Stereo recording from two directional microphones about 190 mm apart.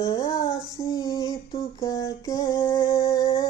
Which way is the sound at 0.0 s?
15° left (ahead or behind).